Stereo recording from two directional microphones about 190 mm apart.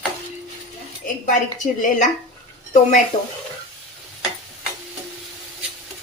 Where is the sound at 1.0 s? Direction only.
45° left (ahead or behind).